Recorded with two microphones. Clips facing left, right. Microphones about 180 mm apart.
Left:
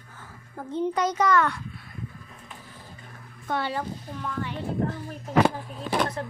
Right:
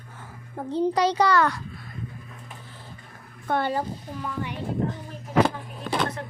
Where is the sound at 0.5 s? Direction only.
35° right (ahead or behind).